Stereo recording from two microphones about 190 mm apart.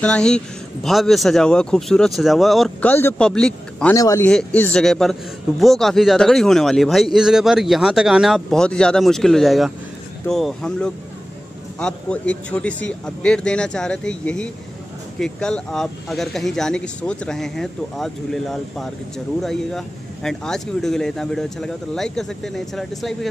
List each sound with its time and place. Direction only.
0.0 s speech: 5° left (ahead or behind)
3.9 s a man's voice: 15° left (ahead or behind)
4.3 s speech: 5° left (ahead or behind)